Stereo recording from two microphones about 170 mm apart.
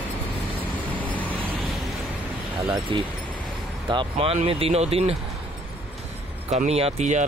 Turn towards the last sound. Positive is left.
turn(degrees=-45)  # may be behind; listen again after turning